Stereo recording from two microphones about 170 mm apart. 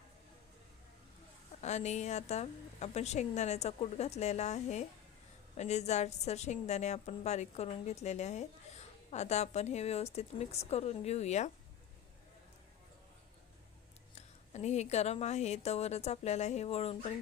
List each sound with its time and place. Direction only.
1.6 s a woman's voice: 40° left (ahead or behind)
14.2 s a woman's voice: 40° left (ahead or behind)